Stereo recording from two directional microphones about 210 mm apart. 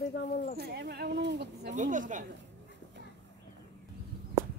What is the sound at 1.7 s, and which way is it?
Speech, 35° right (ahead or behind).